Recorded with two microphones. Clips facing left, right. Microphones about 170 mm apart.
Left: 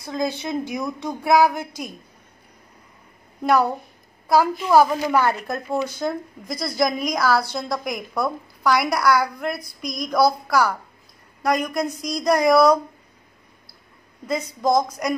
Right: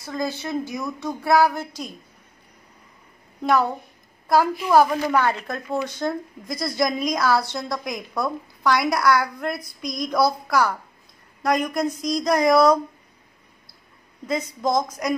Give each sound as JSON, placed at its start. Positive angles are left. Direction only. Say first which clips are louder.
{"t": 0.0, "sound": "a woman's voice", "louder": "left 2 dB", "side_deg": 20}
{"t": 3.4, "sound": "a woman's voice", "louder": "left 2 dB", "side_deg": 5}
{"t": 14.2, "sound": "speech", "louder": "left 2 dB", "side_deg": 0}